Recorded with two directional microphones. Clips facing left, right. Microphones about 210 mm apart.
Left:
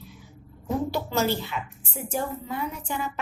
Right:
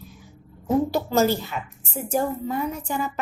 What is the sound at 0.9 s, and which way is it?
A woman's voice, 40° right (ahead or behind).